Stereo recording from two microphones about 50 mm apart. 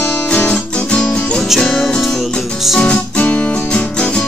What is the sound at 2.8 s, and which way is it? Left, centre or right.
Music, left.